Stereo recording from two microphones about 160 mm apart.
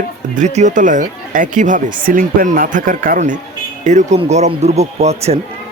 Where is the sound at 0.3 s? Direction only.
50° right (ahead or behind).